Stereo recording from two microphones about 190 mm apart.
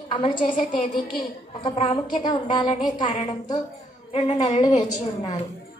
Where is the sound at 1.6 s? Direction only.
25° left (ahead or behind).